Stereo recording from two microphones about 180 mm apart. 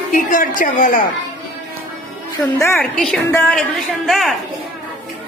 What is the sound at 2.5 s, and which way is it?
Speech, 15° left (ahead or behind).